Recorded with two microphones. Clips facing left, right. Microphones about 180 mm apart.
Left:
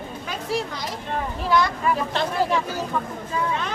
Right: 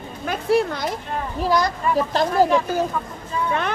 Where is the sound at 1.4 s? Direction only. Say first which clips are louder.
Right 1 dB; 40° right (ahead or behind).